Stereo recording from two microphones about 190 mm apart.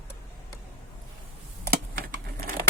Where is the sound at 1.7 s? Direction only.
50° right (ahead or behind).